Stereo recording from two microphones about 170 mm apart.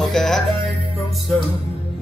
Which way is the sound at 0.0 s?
Centre (ahead or behind).